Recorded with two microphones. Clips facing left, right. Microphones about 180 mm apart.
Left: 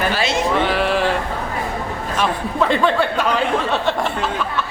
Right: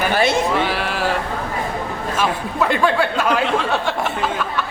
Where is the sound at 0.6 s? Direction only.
5° right (ahead or behind).